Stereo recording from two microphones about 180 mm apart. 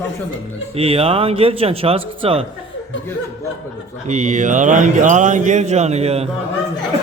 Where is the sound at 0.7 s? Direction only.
35° right (ahead or behind).